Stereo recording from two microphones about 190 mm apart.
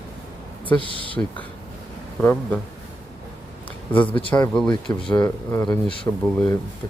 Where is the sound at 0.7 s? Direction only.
25° left (ahead or behind).